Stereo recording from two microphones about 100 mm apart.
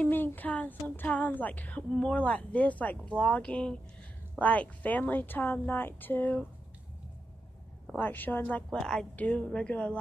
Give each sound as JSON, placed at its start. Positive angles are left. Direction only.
{"t": 0.0, "sound": "a woman's voice", "side_deg": 20}
{"t": 8.0, "sound": "a woman's voice", "side_deg": 20}
{"t": 8.7, "sound": "a woman's voice", "side_deg": 5}